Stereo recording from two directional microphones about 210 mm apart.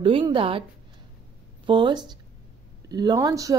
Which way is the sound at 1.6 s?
20° right (ahead or behind).